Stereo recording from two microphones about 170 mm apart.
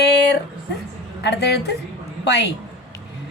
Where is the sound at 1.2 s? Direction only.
75° left (ahead or behind).